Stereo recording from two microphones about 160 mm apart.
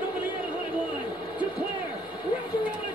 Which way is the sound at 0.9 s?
30° left (ahead or behind).